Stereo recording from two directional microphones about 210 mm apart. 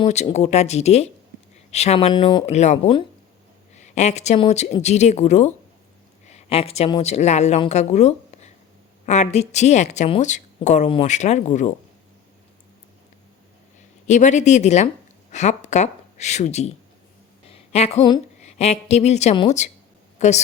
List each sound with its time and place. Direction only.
0.0 s a woman's voice: 30° left (ahead or behind)
14.1 s a woman's voice: 35° left (ahead or behind)
17.5 s a sound: 30° left (ahead or behind)
18.0 s a woman's voice: 25° left (ahead or behind)